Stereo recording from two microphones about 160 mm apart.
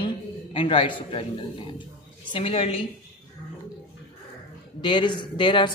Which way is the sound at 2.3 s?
35° left (ahead or behind).